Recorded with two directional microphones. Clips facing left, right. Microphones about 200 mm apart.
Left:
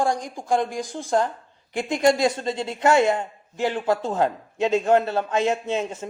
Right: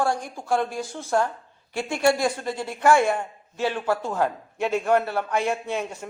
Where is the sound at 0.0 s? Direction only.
15° left (ahead or behind).